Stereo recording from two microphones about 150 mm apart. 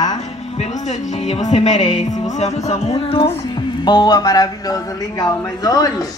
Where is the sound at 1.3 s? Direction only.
45° left (ahead or behind).